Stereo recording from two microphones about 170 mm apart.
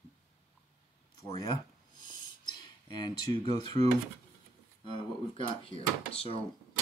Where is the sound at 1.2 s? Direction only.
25° left (ahead or behind).